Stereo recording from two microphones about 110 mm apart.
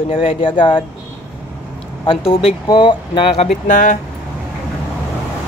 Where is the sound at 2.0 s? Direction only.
55° left (ahead or behind).